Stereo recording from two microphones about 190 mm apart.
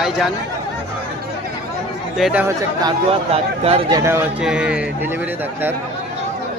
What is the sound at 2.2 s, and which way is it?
Speech, 10° right (ahead or behind).